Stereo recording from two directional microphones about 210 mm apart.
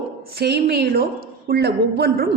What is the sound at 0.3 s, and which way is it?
A woman's voice, 50° right (ahead or behind).